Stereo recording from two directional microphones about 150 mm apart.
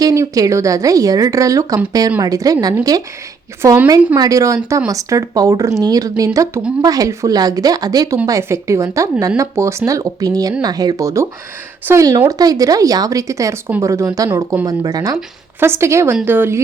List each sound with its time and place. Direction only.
0.0 s a woman's voice: 20° right (ahead or behind)